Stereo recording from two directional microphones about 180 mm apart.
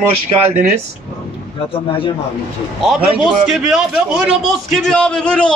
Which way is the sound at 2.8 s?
5° right (ahead or behind).